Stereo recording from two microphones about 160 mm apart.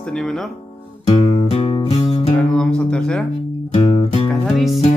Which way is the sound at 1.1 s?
35° left (ahead or behind).